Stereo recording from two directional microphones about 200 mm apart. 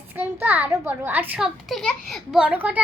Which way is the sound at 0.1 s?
10° right (ahead or behind).